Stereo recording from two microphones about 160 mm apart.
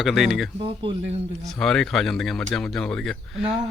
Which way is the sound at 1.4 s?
5° left (ahead or behind).